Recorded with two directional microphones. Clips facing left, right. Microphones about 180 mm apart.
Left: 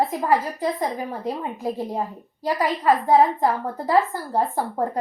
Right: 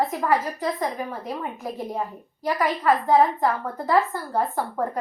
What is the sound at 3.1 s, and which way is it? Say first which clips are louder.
A woman's voice: left 2 dB; 30° left (ahead or behind).